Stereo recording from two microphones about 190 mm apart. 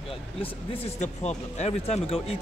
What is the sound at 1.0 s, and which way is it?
Speech, 35° left (ahead or behind).